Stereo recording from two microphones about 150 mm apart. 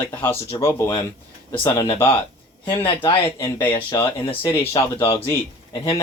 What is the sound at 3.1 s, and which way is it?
Speech, 35° left (ahead or behind).